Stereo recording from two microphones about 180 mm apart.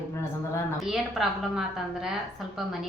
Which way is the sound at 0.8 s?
Centre (ahead or behind).